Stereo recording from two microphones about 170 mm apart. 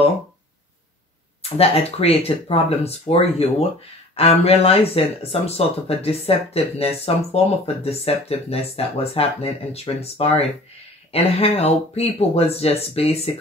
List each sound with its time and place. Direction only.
1.6 s speech: 35° left (ahead or behind)